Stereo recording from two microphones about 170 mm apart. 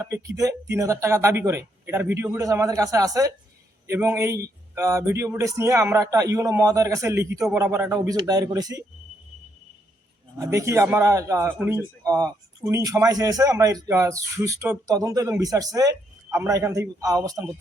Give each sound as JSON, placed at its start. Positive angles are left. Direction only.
{"t": 0.0, "sound": "speech", "side_deg": -15}
{"t": 10.3, "sound": "speech", "side_deg": -15}